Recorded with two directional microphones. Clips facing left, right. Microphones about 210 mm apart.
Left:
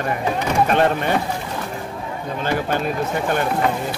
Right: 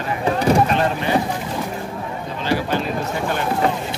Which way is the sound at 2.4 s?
50° left (ahead or behind).